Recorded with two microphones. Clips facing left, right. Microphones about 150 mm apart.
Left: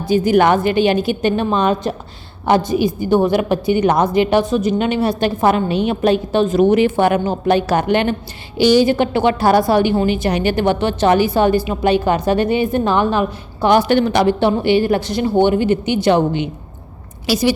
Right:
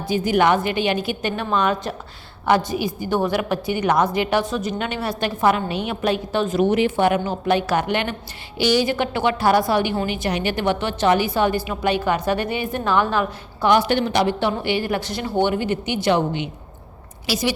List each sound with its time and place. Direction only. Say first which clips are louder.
0.1 s a woman's voice: left 5 dB; 40° left (ahead or behind)
6.6 s a woman's voice: left 4 dB; 45° left (ahead or behind); by 13.7 s 20° left (ahead or behind)
13.7 s a woman's voice: left 4 dB; 45° left (ahead or behind)
14.3 s a woman's voice: left 7 dB; 30° left (ahead or behind)
15.1 s a woman's voice: left 6 dB; 20° left (ahead or behind)
16.0 s a woman's voice: left 5 dB; 40° left (ahead or behind)